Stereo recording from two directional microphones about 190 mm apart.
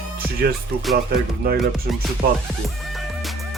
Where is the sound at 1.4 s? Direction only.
50° right (ahead or behind).